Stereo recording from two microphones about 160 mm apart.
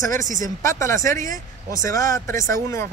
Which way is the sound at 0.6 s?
20° left (ahead or behind).